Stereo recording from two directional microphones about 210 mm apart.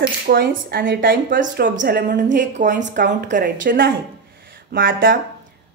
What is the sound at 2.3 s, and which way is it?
Speech, 35° right (ahead or behind).